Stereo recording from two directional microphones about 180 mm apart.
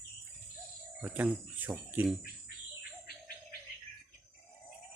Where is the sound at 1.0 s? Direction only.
10° right (ahead or behind).